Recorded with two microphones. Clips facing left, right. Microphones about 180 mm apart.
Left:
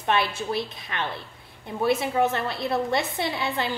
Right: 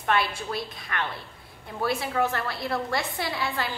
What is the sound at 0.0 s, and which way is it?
A woman's voice, 20° left (ahead or behind).